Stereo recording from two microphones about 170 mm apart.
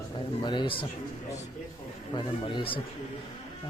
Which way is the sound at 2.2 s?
30° left (ahead or behind).